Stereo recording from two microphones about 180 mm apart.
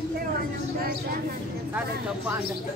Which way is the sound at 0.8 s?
55° right (ahead or behind).